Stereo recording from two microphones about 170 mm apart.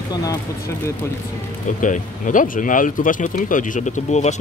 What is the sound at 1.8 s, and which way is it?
Speech, 50° left (ahead or behind).